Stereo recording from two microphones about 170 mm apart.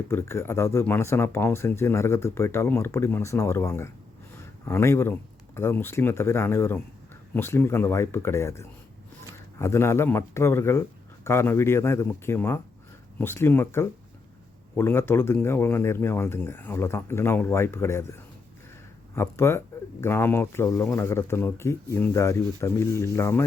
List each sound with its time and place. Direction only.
0.1 s speech: 15° left (ahead or behind)
19.1 s speech: 15° left (ahead or behind)